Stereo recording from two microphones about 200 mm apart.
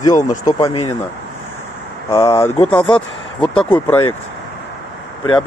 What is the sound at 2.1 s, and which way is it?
Speech, 15° left (ahead or behind).